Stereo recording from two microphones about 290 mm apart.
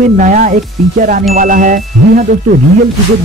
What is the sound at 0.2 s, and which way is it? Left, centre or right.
Speech, right.